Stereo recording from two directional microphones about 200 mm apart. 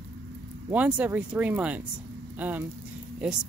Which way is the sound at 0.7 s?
5° right (ahead or behind).